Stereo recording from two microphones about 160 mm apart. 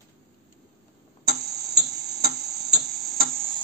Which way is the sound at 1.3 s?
90° right.